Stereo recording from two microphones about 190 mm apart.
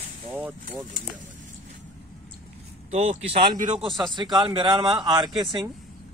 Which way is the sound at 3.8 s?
25° right (ahead or behind).